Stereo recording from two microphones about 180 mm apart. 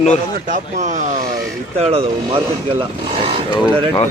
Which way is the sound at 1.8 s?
35° right (ahead or behind).